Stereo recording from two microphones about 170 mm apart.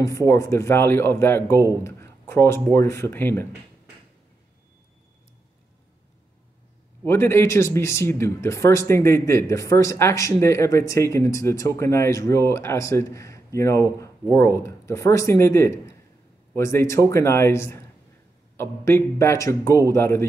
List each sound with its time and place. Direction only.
0.0 s speech: 20° left (ahead or behind)
7.0 s speech: 15° left (ahead or behind)